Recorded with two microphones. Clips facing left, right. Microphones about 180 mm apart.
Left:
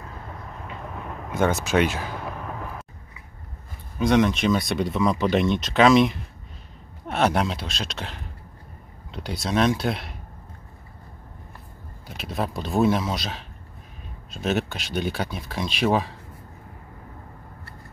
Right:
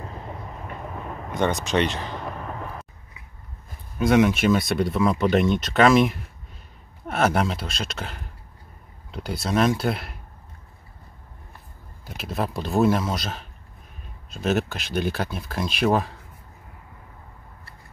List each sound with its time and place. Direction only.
0.6 s a sound: 5° right (ahead or behind)
4.0 s speech: 5° right (ahead or behind)
12.1 s speech: centre (ahead or behind)